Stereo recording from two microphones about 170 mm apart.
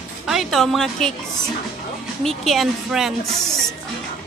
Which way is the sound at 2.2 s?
Centre (ahead or behind).